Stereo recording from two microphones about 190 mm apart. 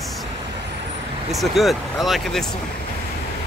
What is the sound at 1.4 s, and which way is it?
Speech, centre (ahead or behind).